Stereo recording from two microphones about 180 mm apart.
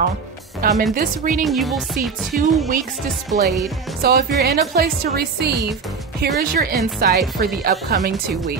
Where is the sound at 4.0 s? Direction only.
65° right (ahead or behind).